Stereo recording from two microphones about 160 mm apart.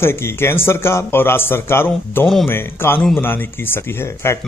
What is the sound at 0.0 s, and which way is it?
Speech, 15° left (ahead or behind).